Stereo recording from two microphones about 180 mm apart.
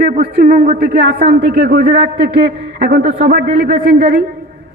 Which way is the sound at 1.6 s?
65° right (ahead or behind).